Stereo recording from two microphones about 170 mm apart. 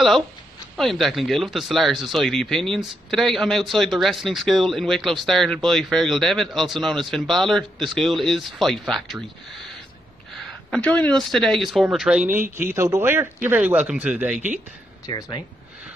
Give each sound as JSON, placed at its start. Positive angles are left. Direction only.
{"t": 0.7, "sound": "speech", "side_deg": 0}
{"t": 10.7, "sound": "speech", "side_deg": 5}
{"t": 15.0, "sound": "speech", "side_deg": 20}